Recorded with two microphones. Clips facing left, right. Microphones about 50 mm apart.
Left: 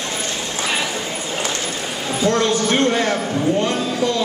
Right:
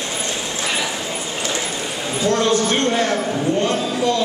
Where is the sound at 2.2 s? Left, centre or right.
Centre.